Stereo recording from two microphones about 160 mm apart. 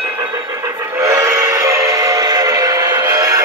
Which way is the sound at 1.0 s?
20° right (ahead or behind).